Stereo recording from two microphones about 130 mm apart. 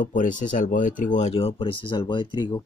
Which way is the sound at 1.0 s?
70° left (ahead or behind).